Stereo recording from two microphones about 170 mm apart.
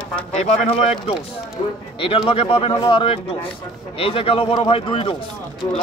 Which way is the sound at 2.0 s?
30° left (ahead or behind).